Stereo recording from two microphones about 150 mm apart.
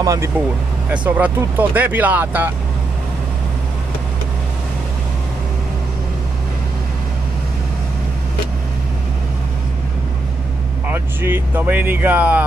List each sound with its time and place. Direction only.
0.0 s speech: 20° right (ahead or behind)
0.9 s speech: 10° right (ahead or behind)
10.9 s speech: 15° right (ahead or behind)